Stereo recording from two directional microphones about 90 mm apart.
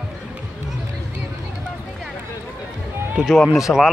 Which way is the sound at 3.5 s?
35° left (ahead or behind).